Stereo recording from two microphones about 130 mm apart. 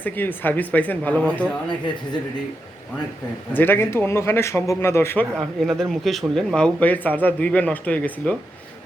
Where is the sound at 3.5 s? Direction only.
15° left (ahead or behind).